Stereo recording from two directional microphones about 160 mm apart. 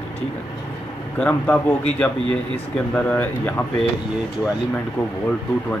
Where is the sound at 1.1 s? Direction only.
10° left (ahead or behind).